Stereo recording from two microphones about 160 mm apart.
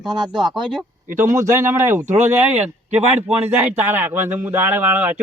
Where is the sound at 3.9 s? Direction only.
15° right (ahead or behind).